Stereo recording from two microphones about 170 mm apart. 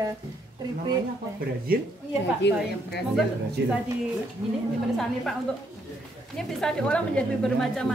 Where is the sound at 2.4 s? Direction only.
90° left.